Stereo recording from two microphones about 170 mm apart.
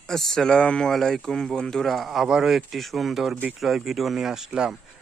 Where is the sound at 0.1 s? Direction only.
Centre (ahead or behind).